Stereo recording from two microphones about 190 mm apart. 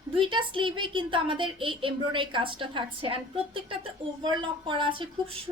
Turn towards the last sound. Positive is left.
turn(degrees=-25)  # may be behind; listen again after turning